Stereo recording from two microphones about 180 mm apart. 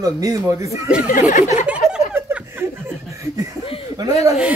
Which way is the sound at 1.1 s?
45° left (ahead or behind).